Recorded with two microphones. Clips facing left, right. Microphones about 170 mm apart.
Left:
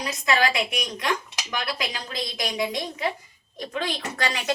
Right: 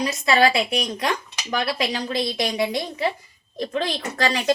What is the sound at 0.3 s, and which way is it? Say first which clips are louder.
A woman's voice: right 4 dB; 30° right (ahead or behind).